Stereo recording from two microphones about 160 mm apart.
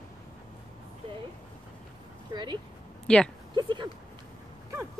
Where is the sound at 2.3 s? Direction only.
30° right (ahead or behind).